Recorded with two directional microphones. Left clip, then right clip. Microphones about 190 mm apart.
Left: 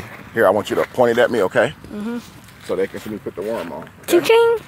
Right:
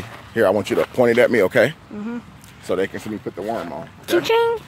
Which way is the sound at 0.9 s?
25° right (ahead or behind).